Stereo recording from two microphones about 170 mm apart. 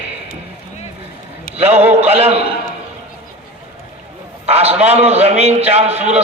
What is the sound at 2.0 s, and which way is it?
Speech, 35° right (ahead or behind).